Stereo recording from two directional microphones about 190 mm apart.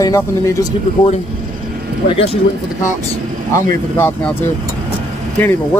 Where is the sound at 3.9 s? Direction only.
10° left (ahead or behind).